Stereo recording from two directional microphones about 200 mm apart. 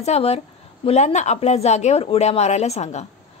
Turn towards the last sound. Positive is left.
turn(degrees=35)  # may be behind; listen again after turning